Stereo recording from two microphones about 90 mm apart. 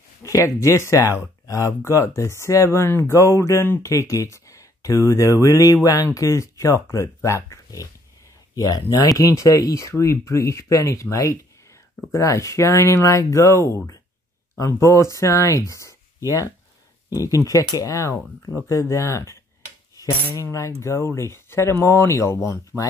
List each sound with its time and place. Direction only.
0.2 s speech: 40° left (ahead or behind)
14.7 s speech: 30° left (ahead or behind)
20.5 s speech: 35° left (ahead or behind)
22.7 s speech: 15° right (ahead or behind)